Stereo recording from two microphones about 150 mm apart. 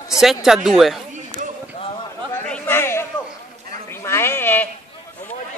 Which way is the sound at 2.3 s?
15° left (ahead or behind).